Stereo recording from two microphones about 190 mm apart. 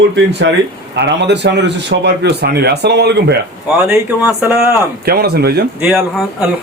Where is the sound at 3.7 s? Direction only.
10° right (ahead or behind).